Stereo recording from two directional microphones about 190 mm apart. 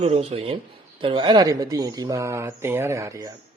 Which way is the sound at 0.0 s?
30° right (ahead or behind).